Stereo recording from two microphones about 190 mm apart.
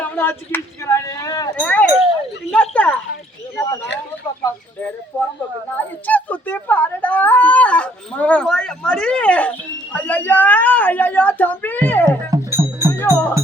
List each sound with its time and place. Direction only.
0.0 s speech: 10° left (ahead or behind)
1.5 s speech: 5° left (ahead or behind)
5.1 s speech: 10° left (ahead or behind)
12.0 s music: 15° right (ahead or behind)
13.0 s music: 10° left (ahead or behind)